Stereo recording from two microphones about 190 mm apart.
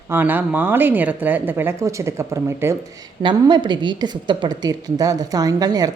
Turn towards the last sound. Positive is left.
turn(degrees=-20)  # may be behind; listen again after turning